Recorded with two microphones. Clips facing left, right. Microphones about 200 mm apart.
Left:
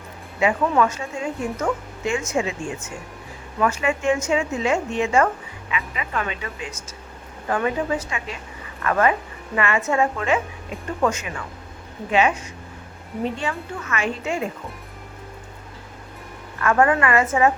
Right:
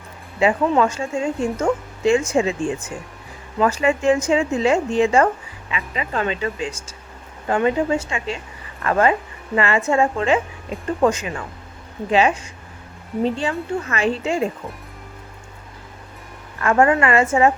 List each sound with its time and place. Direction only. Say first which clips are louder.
0.3 s a woman's voice: right 2 dB; 30° right (ahead or behind)
16.6 s speech: right 2 dB; 25° right (ahead or behind)